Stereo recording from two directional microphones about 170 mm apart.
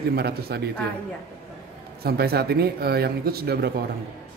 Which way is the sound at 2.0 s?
65° right (ahead or behind).